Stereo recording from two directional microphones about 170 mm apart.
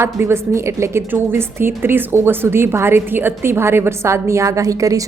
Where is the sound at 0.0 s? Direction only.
15° right (ahead or behind).